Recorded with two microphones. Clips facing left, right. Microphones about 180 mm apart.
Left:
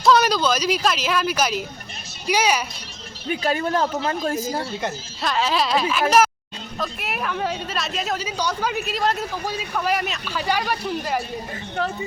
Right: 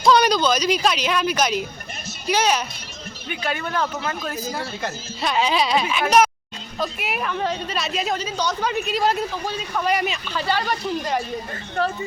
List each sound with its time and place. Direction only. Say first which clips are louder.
0.0 s speech: right 1 dB; centre (ahead or behind)
3.2 s speech: left 5 dB; 35° left (ahead or behind)
5.2 s a woman's voice: right 1 dB; centre (ahead or behind)